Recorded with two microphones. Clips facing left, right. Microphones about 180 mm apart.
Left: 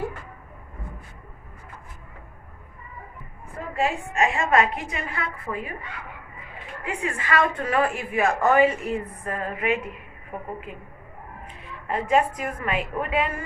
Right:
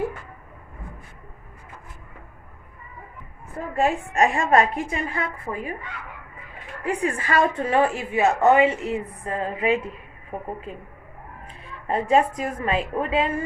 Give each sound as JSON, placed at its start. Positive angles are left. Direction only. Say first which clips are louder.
{"t": 3.8, "sound": "a woman's voice", "louder": "right 3 dB", "side_deg": -40}
{"t": 5.5, "sound": "a woman's voice", "louder": "left 3 dB", "side_deg": -20}
{"t": 6.8, "sound": "a woman's voice", "louder": "right 4 dB", "side_deg": -40}
{"t": 11.4, "sound": "a woman's voice", "louder": "right 3 dB", "side_deg": -30}